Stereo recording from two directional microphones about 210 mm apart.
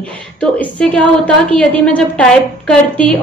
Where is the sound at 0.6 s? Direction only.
5° left (ahead or behind).